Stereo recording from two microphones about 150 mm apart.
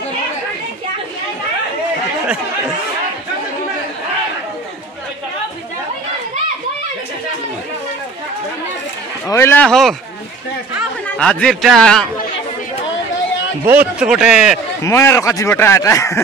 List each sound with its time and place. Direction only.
9.3 s speech: 15° left (ahead or behind)
9.7 s a man's voice: centre (ahead or behind)
11.1 s a man's voice: 5° left (ahead or behind)
13.7 s speech: 10° right (ahead or behind)
14.8 s speech: 20° left (ahead or behind)